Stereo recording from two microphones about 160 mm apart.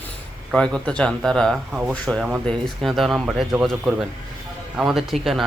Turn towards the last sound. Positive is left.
turn(degrees=0)  # may be behind; listen again after turning